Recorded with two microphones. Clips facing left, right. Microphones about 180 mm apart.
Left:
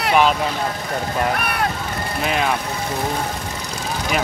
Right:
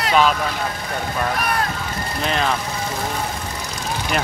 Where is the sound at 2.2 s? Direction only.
5° left (ahead or behind).